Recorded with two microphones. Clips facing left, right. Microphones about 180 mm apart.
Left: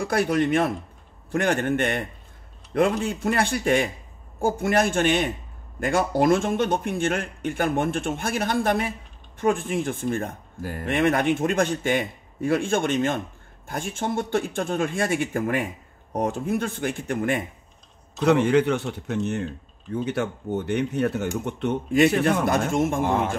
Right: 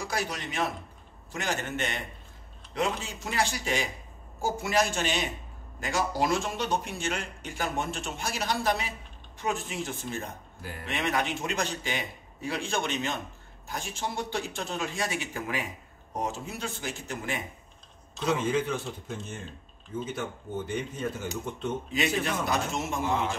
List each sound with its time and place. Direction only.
0.0 s a man's voice: 55° left (ahead or behind)